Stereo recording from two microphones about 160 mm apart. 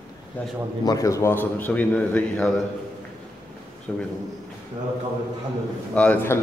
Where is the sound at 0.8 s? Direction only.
20° left (ahead or behind).